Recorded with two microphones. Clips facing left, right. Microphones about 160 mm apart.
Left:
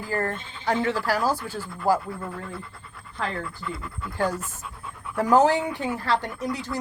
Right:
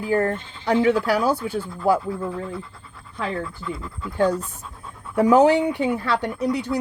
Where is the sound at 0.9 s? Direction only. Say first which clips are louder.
Right 5 dB; 65° right (ahead or behind).